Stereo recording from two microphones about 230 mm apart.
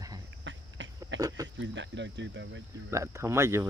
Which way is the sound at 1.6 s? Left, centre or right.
Right.